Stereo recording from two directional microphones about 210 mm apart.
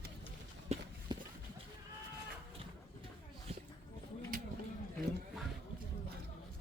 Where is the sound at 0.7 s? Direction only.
30° right (ahead or behind).